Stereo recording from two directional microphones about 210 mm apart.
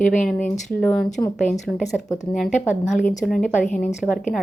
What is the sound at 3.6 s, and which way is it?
Speech, 35° left (ahead or behind).